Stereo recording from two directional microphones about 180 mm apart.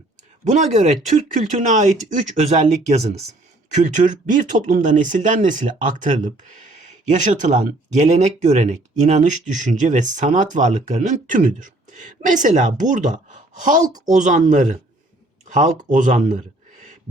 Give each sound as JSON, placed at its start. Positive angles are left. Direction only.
{"t": 0.4, "sound": "speech", "side_deg": -40}